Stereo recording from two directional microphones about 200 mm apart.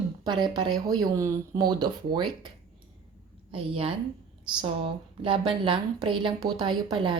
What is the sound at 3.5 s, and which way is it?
Speech, 25° right (ahead or behind).